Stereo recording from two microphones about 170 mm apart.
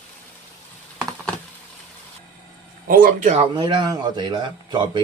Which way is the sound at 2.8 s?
55° right (ahead or behind).